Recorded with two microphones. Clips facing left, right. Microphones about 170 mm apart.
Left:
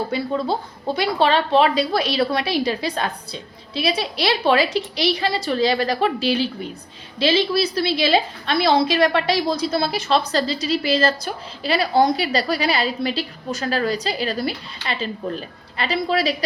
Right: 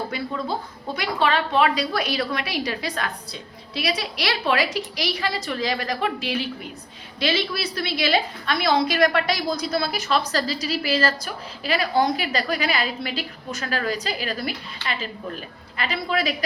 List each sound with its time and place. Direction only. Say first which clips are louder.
0.1 s a woman's voice: left 5 dB; 30° left (ahead or behind)